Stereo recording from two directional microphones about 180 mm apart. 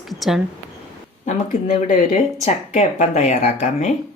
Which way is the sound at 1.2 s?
40° left (ahead or behind).